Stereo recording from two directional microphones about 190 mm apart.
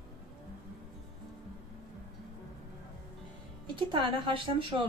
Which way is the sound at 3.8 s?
25° right (ahead or behind).